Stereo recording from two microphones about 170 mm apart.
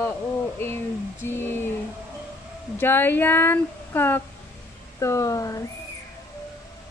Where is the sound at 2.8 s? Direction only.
10° left (ahead or behind).